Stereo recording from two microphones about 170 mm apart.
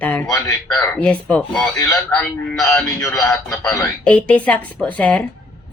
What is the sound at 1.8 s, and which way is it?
Speech, 15° left (ahead or behind).